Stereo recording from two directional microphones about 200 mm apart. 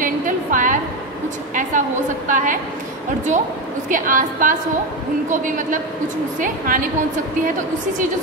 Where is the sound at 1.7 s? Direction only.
40° right (ahead or behind).